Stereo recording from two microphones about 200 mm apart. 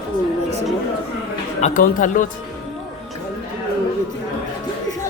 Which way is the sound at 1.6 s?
40° left (ahead or behind).